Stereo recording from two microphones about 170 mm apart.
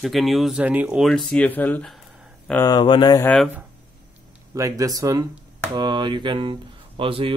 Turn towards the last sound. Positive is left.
turn(degrees=-30)  # may be behind; listen again after turning